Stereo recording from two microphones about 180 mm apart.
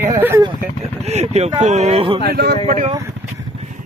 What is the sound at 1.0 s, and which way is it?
Vehicle, 35° right (ahead or behind).